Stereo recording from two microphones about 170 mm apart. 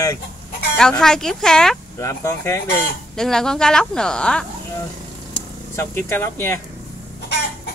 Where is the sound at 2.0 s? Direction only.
15° left (ahead or behind).